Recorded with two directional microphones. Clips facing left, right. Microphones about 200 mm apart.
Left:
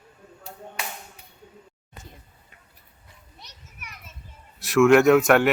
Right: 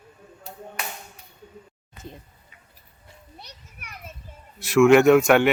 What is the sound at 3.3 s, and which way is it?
Children playing, 60° right (ahead or behind).